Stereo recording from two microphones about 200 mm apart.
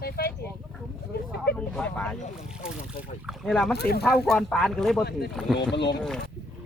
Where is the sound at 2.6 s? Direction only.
5° right (ahead or behind).